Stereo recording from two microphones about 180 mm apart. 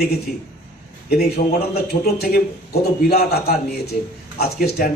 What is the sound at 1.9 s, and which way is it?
A man's voice, 60° left (ahead or behind).